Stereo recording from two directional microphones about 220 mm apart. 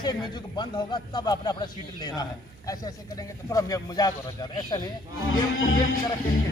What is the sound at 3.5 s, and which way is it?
Speech, 15° left (ahead or behind).